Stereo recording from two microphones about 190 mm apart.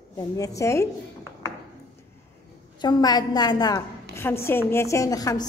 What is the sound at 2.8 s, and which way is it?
A woman's voice, 20° left (ahead or behind).